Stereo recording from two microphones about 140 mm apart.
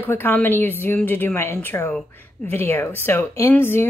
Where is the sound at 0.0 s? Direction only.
15° left (ahead or behind).